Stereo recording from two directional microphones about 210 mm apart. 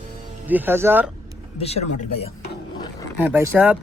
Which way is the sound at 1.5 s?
30° left (ahead or behind).